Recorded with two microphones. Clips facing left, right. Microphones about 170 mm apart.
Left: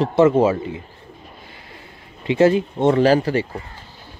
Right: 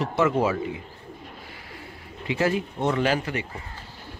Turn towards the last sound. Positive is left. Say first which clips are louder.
# left 9 dB
turn(degrees=35)  # may be behind; listen again after turning